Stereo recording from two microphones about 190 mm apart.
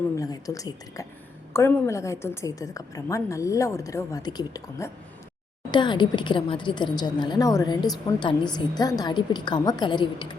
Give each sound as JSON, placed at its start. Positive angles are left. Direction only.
{"t": 0.2, "sound": "a woman's voice", "side_deg": 20}